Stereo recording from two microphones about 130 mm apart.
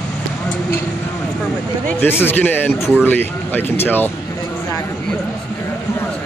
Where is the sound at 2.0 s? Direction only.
15° left (ahead or behind).